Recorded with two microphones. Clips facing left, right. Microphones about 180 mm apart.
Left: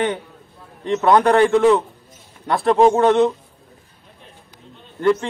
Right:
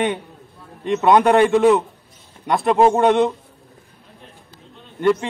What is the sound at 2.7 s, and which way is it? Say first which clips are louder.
Speech: left 1 dB; 5° right (ahead or behind).